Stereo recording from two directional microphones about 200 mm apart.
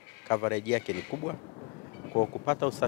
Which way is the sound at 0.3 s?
15° left (ahead or behind).